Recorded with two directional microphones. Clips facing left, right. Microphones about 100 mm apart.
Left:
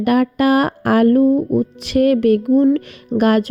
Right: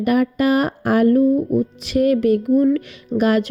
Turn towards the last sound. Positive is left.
turn(degrees=55)  # may be behind; listen again after turning